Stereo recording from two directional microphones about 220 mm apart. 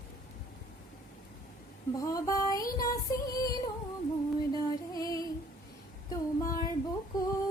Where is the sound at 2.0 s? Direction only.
15° left (ahead or behind).